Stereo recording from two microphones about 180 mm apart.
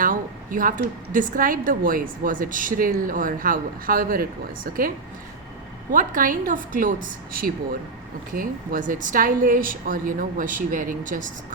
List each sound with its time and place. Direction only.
0.0 s a woman's voice: 50° right (ahead or behind)
5.9 s a woman's voice: 45° right (ahead or behind)